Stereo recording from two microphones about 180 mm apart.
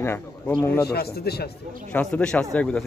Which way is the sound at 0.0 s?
15° left (ahead or behind).